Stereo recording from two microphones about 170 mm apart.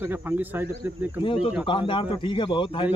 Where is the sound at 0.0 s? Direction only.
10° right (ahead or behind).